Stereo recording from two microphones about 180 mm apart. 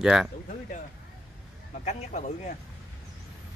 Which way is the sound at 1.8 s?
40° left (ahead or behind).